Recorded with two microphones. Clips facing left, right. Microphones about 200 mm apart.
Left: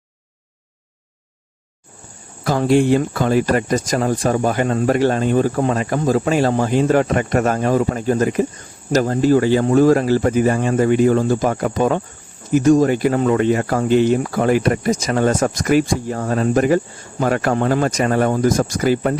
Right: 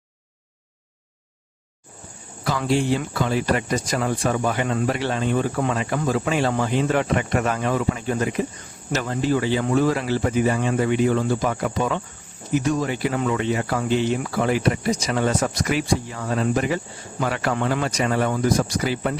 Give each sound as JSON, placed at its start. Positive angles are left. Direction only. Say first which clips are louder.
{"t": 2.4, "sound": "speech", "louder": "left 7 dB", "side_deg": 45}